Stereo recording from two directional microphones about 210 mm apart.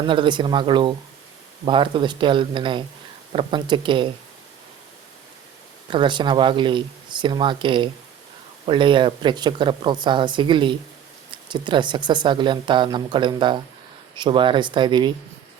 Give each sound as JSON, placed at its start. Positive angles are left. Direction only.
{"t": 0.0, "sound": "speech", "side_deg": -20}
{"t": 5.9, "sound": "speech", "side_deg": -20}